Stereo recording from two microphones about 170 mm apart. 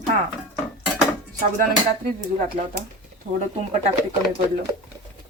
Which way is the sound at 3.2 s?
50° right (ahead or behind).